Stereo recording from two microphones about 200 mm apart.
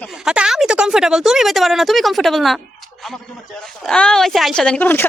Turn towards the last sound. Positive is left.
turn(degrees=10)  # may be behind; listen again after turning